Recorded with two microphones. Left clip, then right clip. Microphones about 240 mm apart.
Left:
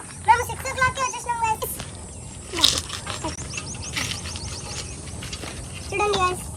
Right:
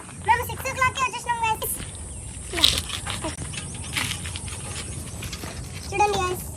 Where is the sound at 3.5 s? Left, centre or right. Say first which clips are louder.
Left 1 dB; right.